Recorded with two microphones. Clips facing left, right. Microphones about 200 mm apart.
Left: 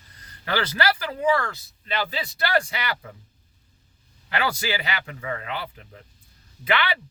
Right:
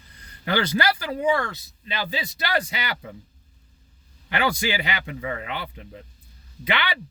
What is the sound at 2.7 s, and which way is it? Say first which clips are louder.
Speech: left 1 dB; 25° right (ahead or behind).